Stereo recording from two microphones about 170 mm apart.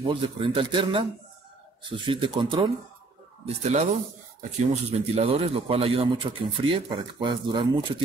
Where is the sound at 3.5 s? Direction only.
40° right (ahead or behind).